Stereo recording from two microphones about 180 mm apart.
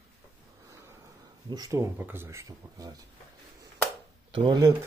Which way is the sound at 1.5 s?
20° right (ahead or behind).